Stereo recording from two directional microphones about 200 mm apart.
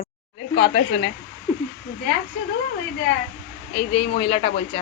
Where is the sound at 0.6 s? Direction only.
60° left (ahead or behind).